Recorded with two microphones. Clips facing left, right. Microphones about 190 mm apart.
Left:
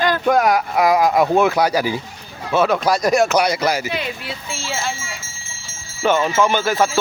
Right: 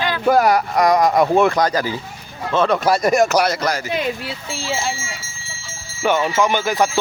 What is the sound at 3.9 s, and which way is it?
Speech, 40° right (ahead or behind).